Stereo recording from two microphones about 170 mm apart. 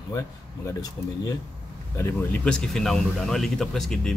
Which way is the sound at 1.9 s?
10° left (ahead or behind).